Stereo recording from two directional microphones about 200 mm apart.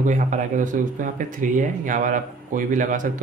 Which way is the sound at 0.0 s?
40° right (ahead or behind).